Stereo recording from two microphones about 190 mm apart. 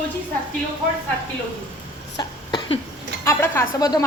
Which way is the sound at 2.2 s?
25° left (ahead or behind).